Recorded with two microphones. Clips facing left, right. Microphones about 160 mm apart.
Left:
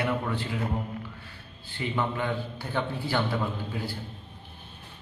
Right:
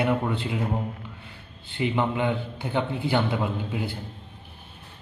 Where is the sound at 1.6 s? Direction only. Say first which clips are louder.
Right 5 dB; 15° right (ahead or behind).